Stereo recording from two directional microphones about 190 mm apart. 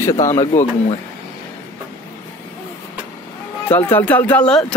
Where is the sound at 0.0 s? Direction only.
15° left (ahead or behind).